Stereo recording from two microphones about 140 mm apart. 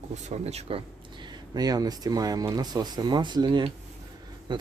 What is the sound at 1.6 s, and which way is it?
Speech, 25° right (ahead or behind).